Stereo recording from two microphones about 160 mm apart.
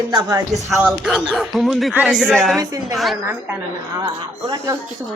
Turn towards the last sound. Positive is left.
turn(degrees=-20)  # may be behind; listen again after turning